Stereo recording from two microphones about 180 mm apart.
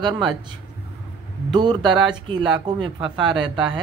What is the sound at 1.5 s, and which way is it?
Speech, 25° right (ahead or behind).